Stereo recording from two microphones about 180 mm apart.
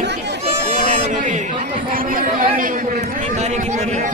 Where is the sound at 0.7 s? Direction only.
40° right (ahead or behind).